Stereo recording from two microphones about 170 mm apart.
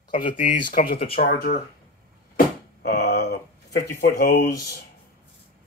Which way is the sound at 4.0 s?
60° left (ahead or behind).